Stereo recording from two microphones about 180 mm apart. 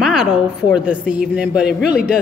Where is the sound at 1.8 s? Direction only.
55° left (ahead or behind).